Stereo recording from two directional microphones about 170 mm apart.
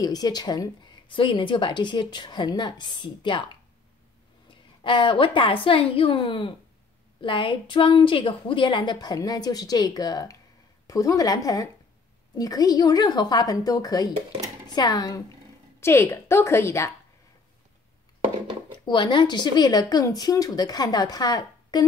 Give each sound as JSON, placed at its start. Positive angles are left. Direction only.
{"t": 0.0, "sound": "a woman's voice", "side_deg": 25}
{"t": 4.5, "sound": "a woman's voice", "side_deg": 30}
{"t": 18.9, "sound": "a woman's voice", "side_deg": 25}